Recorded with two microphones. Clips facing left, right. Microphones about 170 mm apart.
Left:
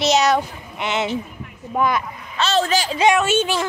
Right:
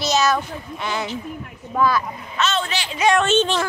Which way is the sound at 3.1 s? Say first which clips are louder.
Right 1 dB; 10° left (ahead or behind).